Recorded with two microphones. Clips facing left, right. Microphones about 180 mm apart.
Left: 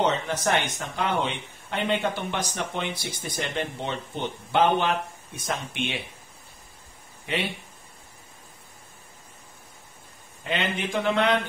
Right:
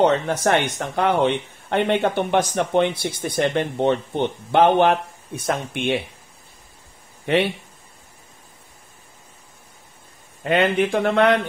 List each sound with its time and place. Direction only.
0.0 s speech: 60° right (ahead or behind)
10.4 s speech: 60° right (ahead or behind)